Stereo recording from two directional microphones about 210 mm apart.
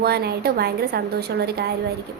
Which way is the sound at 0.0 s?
50° right (ahead or behind).